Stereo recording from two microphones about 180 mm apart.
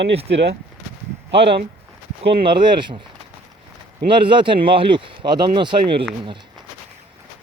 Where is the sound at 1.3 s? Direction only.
75° right (ahead or behind).